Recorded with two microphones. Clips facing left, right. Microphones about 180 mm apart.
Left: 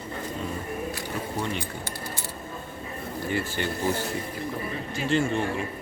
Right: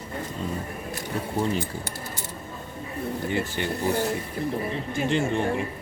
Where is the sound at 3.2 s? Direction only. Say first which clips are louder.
Left 1 dB; 20° right (ahead or behind).